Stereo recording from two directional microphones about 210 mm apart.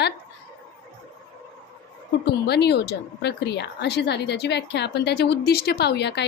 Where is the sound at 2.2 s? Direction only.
50° left (ahead or behind).